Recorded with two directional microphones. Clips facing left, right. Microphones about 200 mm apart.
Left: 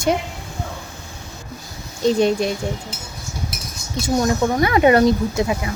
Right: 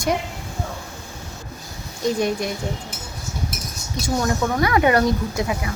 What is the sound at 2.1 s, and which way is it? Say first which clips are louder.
Speech: left 5 dB; 25° left (ahead or behind).